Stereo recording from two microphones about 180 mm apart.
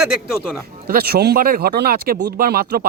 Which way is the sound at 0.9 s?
60° right (ahead or behind).